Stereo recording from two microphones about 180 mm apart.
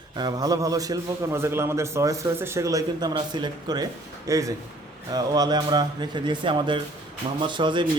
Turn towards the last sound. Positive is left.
turn(degrees=-25)  # may be behind; listen again after turning